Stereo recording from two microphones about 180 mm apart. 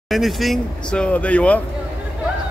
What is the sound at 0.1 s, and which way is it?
Speech, centre (ahead or behind).